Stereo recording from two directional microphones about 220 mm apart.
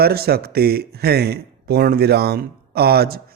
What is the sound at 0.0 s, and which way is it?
A man's voice, 45° right (ahead or behind).